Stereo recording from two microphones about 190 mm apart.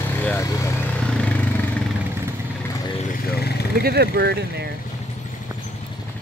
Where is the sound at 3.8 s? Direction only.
55° right (ahead or behind).